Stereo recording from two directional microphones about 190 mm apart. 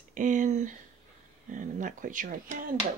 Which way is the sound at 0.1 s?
40° right (ahead or behind).